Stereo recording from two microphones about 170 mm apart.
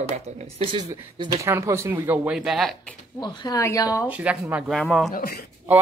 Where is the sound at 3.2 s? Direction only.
20° left (ahead or behind).